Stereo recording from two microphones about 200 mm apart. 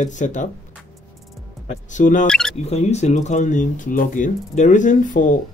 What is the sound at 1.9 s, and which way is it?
Speech, 40° left (ahead or behind).